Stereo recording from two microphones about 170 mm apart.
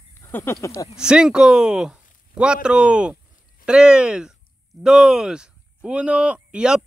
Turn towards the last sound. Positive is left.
turn(degrees=-5)  # may be behind; listen again after turning